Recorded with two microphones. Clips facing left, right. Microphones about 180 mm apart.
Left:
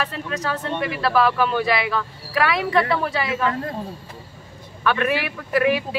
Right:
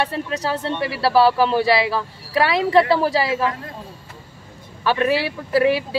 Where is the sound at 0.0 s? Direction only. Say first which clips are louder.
Right 3 dB; 35° right (ahead or behind).